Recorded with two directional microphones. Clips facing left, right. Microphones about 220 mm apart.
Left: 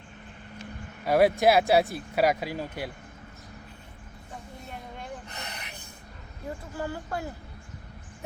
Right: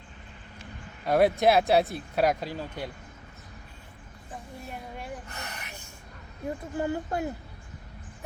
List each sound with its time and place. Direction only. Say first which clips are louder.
1.0 s speech: left 1 dB; 5° left (ahead or behind)
5.3 s gasp: even; 20° left (ahead or behind)
6.7 s speech: right 4 dB; 20° right (ahead or behind)